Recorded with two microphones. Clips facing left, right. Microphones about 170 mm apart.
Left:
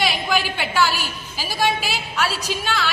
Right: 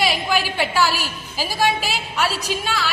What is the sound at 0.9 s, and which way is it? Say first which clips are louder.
Speech: right 1 dB; 40° right (ahead or behind).